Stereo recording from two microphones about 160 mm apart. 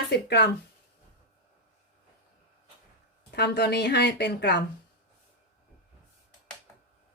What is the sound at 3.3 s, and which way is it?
Speech, 90° left.